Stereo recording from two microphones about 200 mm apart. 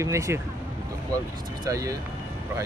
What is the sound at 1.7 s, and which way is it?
Speech, 15° right (ahead or behind).